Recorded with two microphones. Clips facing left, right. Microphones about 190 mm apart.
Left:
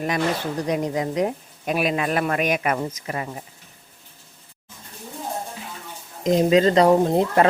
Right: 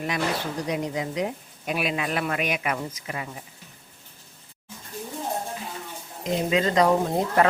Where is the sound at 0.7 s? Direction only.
45° left (ahead or behind).